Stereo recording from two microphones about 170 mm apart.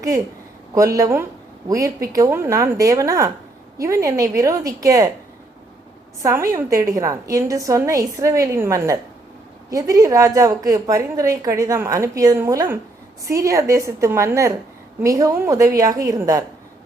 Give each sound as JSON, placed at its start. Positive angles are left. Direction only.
{"t": 0.9, "sound": "a woman's voice", "side_deg": -15}
{"t": 6.2, "sound": "a woman's voice", "side_deg": -15}